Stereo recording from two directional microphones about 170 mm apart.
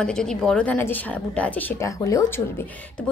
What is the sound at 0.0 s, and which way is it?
A woman's voice, 5° left (ahead or behind).